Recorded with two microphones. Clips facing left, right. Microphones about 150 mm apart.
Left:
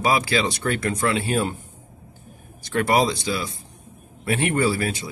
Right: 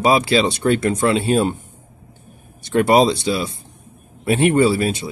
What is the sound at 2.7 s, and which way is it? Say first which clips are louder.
Speech: right 6 dB; 25° right (ahead or behind).